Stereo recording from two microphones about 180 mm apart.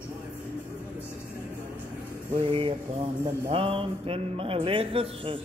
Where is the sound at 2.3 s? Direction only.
30° right (ahead or behind).